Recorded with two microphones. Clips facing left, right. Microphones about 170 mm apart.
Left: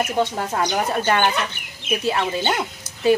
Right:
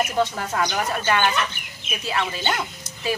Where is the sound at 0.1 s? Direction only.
20° left (ahead or behind).